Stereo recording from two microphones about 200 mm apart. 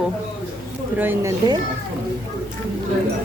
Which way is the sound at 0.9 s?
10° right (ahead or behind).